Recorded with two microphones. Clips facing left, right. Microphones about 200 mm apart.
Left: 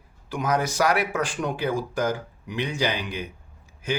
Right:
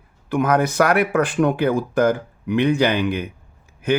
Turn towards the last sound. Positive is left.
turn(degrees=-60)  # may be behind; listen again after turning